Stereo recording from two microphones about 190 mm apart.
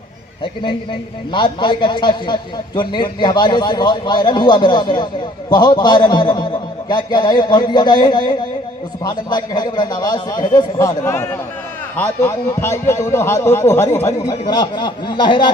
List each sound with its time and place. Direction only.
1.3 s a man's voice: 25° left (ahead or behind)